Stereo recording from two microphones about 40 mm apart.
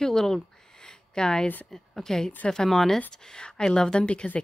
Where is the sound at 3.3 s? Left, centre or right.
Centre.